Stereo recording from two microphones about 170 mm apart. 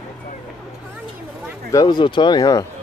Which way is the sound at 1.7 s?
25° left (ahead or behind).